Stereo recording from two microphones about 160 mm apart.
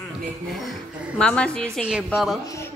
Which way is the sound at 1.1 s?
5° left (ahead or behind).